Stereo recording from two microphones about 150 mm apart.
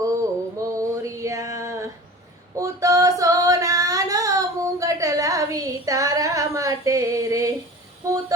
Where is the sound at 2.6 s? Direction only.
20° right (ahead or behind).